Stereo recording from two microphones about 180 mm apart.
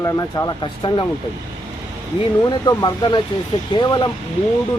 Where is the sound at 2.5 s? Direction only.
20° left (ahead or behind).